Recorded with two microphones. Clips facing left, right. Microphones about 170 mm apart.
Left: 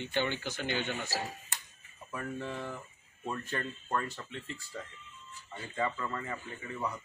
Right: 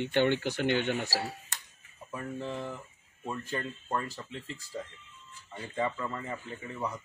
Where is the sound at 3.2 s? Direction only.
10° right (ahead or behind).